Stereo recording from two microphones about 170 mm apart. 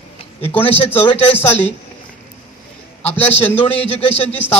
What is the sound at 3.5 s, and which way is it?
Speech, 35° left (ahead or behind).